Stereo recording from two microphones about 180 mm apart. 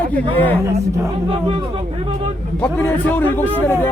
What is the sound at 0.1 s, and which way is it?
Speech, 10° left (ahead or behind).